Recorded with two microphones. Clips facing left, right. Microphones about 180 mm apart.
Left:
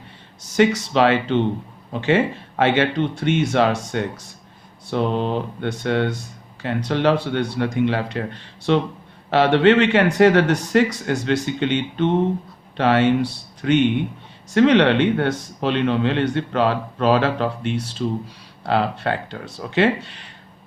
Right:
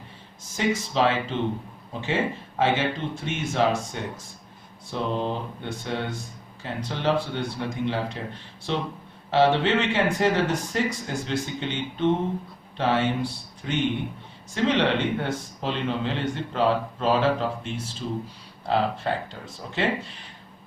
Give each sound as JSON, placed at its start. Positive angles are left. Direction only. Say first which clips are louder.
{"t": 0.5, "sound": "speech", "louder": "left 7 dB", "side_deg": 75}